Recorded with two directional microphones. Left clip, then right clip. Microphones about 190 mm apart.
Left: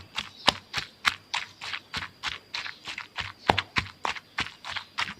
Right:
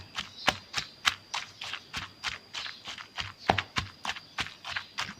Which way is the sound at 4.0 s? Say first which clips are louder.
Left 4 dB; 5° left (ahead or behind).